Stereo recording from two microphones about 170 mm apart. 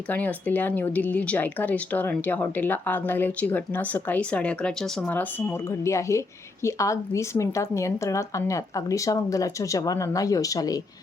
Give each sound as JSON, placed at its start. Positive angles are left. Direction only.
{"t": 0.1, "sound": "speech", "side_deg": 10}